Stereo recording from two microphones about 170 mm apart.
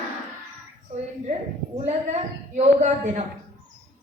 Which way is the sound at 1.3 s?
45° right (ahead or behind).